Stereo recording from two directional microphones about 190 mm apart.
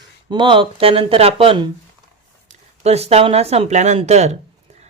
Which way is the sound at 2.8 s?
35° right (ahead or behind).